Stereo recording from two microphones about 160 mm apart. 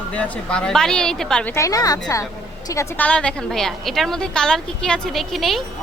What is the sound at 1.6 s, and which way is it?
A woman's voice, 20° left (ahead or behind).